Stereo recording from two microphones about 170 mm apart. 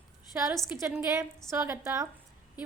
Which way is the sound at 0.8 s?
15° right (ahead or behind).